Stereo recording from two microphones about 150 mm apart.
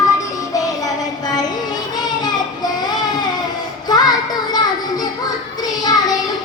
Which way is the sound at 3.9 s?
25° left (ahead or behind).